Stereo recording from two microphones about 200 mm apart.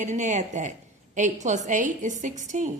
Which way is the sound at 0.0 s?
40° right (ahead or behind).